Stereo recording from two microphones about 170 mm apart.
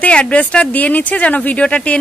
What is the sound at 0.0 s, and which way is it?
Speech, 5° left (ahead or behind).